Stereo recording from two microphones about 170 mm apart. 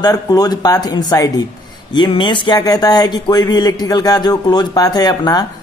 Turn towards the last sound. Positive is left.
turn(degrees=25)  # may be behind; listen again after turning